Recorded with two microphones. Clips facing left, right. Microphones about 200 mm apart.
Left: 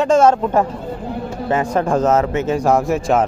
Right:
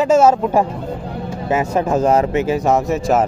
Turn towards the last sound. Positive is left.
turn(degrees=-5)  # may be behind; listen again after turning